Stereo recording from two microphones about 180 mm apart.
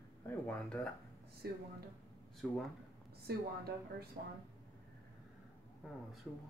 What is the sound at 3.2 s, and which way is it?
Speech, 60° right (ahead or behind).